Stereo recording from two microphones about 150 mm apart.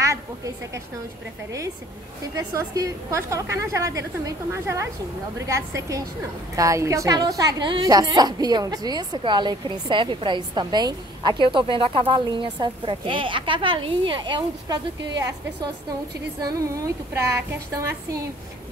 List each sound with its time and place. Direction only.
2.3 s a woman's voice: 25° right (ahead or behind)
5.5 s a woman's voice: 20° right (ahead or behind)